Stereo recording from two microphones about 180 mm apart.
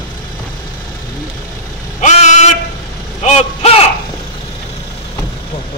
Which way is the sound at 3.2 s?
35° left (ahead or behind).